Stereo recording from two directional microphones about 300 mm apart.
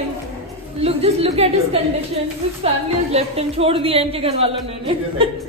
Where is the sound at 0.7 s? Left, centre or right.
Centre.